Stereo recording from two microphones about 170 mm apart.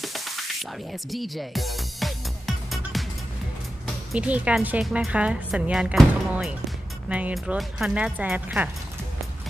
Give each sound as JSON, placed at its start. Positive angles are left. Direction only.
{"t": 0.0, "sound": "music", "side_deg": 0}
{"t": 3.8, "sound": "speech", "side_deg": -5}